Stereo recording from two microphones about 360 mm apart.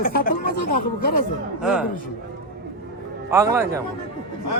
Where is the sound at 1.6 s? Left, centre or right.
Centre.